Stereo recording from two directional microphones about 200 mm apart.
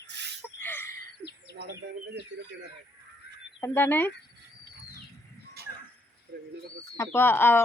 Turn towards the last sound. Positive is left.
turn(degrees=10)  # may be behind; listen again after turning